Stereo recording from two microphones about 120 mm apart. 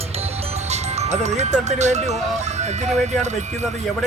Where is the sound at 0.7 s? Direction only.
65° right (ahead or behind).